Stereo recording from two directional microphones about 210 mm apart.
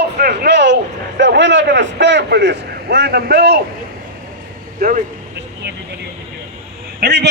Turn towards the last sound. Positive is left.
turn(degrees=-50)  # may be behind; listen again after turning